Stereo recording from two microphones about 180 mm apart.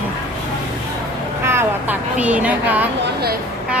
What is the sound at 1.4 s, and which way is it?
Speech, 15° right (ahead or behind).